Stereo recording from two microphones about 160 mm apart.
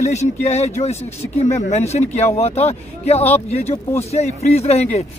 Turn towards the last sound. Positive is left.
turn(degrees=40)  # may be behind; listen again after turning